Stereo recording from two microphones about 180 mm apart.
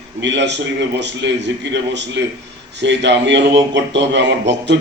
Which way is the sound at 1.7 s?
75° right (ahead or behind).